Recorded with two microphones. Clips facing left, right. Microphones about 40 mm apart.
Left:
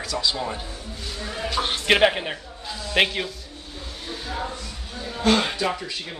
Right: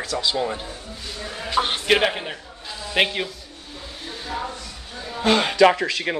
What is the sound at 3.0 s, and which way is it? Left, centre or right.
Speech, centre.